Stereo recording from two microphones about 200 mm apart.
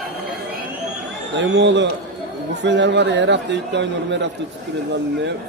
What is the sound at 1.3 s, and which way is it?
A man's voice, 65° right (ahead or behind).